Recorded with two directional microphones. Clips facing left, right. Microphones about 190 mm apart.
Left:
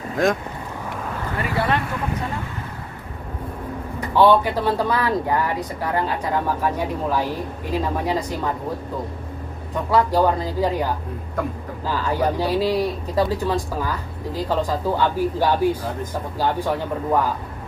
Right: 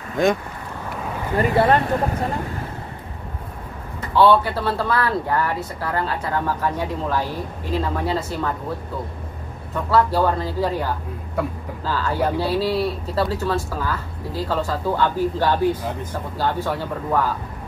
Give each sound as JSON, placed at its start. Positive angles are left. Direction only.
{"t": 0.2, "sound": "speech", "side_deg": 0}
{"t": 1.6, "sound": "speech", "side_deg": -40}
{"t": 4.1, "sound": "speech", "side_deg": 15}
{"t": 9.8, "sound": "speech", "side_deg": 15}